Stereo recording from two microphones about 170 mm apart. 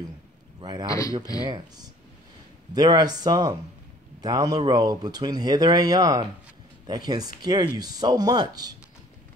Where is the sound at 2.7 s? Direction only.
25° right (ahead or behind).